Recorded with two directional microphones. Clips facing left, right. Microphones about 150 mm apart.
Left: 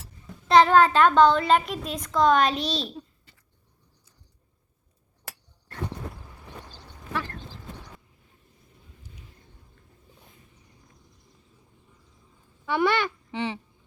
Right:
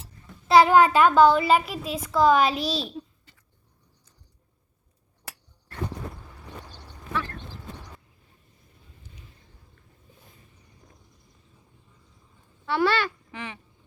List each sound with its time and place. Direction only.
0.4 s a child's voice: 10° right (ahead or behind)
12.6 s speech: 15° left (ahead or behind)